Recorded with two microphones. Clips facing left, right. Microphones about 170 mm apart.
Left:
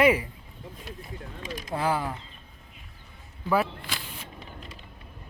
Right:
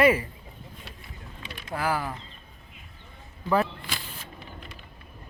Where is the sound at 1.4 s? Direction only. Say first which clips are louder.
Left 5 dB; 40° left (ahead or behind).